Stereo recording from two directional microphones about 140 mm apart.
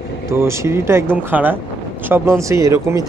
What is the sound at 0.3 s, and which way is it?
Speech, 20° right (ahead or behind).